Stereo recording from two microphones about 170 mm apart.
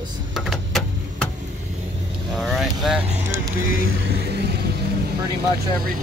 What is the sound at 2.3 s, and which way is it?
Speech, centre (ahead or behind).